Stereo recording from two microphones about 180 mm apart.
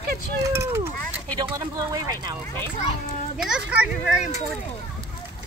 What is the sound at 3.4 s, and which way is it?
Speech, 5° right (ahead or behind).